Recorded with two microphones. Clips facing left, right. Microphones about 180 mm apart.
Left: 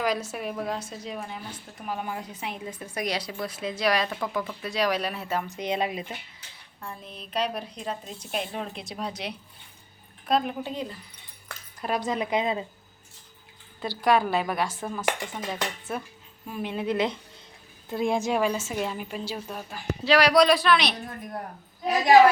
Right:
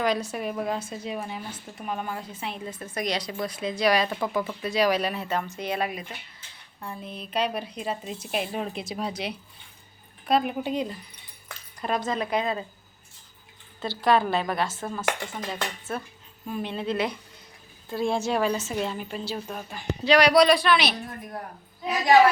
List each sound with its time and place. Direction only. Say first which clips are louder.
0.0 s a woman's voice: right 2 dB; 5° left (ahead or behind)
5.5 s speech: left 1 dB; 20° left (ahead or behind)
6.8 s a woman's voice: right 3 dB; 5° right (ahead or behind)
11.4 s a sound: right 1 dB; centre (ahead or behind)
11.9 s a woman's voice: left 1 dB; 15° left (ahead or behind)
13.8 s a woman's voice: even; 10° left (ahead or behind)
16.5 s a woman's voice: even; 5° left (ahead or behind)